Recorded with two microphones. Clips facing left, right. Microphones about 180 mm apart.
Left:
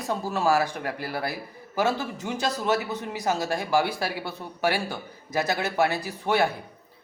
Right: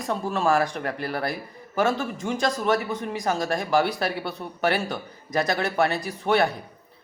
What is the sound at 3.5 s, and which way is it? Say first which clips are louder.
A man's voice: right 2 dB; 10° left (ahead or behind).